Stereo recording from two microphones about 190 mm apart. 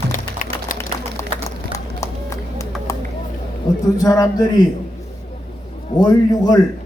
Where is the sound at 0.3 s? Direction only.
45° left (ahead or behind).